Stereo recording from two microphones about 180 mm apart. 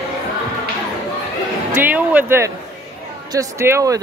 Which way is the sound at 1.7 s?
10° right (ahead or behind).